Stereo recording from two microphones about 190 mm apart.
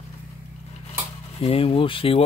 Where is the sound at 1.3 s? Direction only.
30° left (ahead or behind).